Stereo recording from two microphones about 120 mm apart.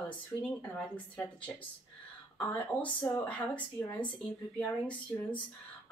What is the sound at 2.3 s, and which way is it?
Speech, 10° left (ahead or behind).